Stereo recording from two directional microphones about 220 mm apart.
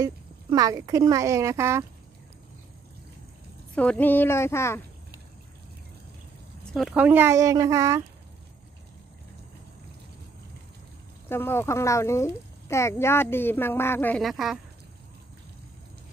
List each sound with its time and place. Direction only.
0.0 s speech: 15° right (ahead or behind)
3.7 s speech: 5° left (ahead or behind)
6.7 s speech: centre (ahead or behind)
11.2 s speech: 10° left (ahead or behind)